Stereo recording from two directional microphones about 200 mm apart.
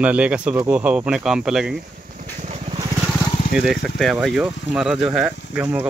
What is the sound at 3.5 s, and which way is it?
Speech, centre (ahead or behind).